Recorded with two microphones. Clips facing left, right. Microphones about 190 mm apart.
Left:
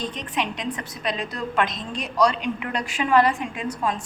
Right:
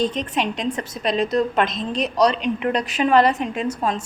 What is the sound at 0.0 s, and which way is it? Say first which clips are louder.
A woman's voice: right 6 dB; 25° right (ahead or behind).